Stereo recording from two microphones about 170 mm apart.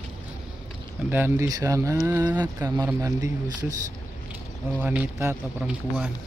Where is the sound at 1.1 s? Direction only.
15° right (ahead or behind).